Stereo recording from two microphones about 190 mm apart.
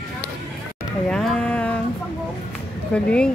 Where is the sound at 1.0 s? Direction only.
5° left (ahead or behind).